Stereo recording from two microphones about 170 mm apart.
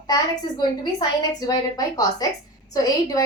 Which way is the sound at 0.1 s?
25° left (ahead or behind).